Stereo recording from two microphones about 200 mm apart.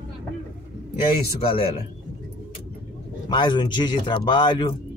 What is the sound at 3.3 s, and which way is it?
Speech, 20° left (ahead or behind).